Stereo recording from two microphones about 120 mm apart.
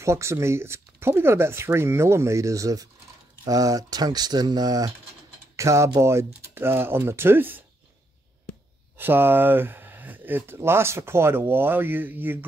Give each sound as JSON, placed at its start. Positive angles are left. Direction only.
{"t": 0.0, "sound": "speech", "side_deg": -25}
{"t": 8.9, "sound": "speech", "side_deg": -15}